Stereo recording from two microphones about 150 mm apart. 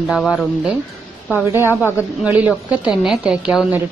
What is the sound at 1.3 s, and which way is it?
A woman's voice, 15° right (ahead or behind).